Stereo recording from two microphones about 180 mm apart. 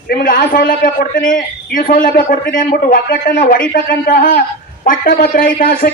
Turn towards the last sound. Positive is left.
turn(degrees=50)  # may be behind; listen again after turning